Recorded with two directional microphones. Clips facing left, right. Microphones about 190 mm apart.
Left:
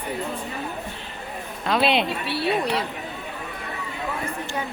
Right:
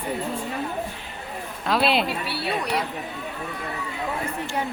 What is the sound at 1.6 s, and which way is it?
Speech, centre (ahead or behind).